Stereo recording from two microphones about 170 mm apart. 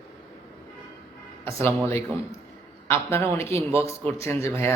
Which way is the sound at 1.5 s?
15° left (ahead or behind).